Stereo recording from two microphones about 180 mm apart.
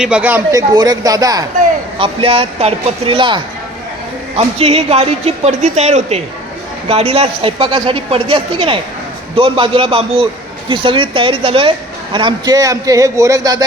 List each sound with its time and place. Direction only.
0.0 s speech: 5° right (ahead or behind)
0.5 s a man's voice: 20° right (ahead or behind)
2.0 s a man's voice: 30° right (ahead or behind)